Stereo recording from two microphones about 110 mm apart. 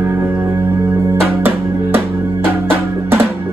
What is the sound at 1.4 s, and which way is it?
Music, 20° right (ahead or behind).